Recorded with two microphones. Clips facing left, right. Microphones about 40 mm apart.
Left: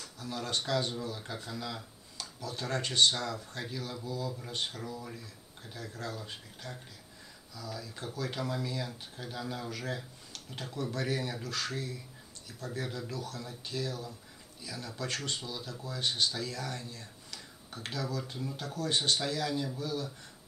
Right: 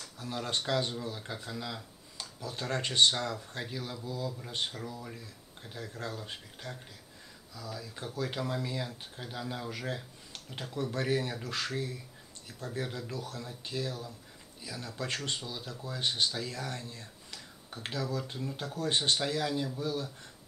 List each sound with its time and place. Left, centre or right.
0.0 s speech: centre
1.1 s speech: centre; by 11.1 s right
11.1 s speech: centre
11.4 s speech: right
12.8 s speech: centre
13.1 s speech: right
16.7 s a sound: centre
18.1 s speech: right